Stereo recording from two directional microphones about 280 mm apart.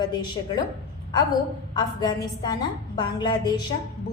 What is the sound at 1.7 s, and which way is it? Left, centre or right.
A woman's voice, centre.